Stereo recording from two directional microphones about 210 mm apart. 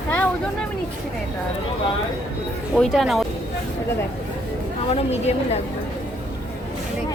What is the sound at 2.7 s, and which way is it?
Speech, centre (ahead or behind).